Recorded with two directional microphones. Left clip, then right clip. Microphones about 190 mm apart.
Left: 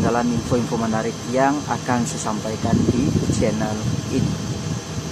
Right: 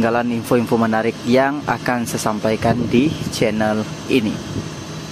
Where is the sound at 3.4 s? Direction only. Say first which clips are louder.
Right 5 dB; 35° right (ahead or behind).